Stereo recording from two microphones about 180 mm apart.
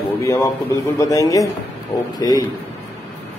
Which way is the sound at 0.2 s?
20° left (ahead or behind).